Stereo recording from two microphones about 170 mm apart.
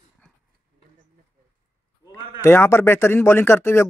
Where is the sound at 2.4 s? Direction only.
15° left (ahead or behind).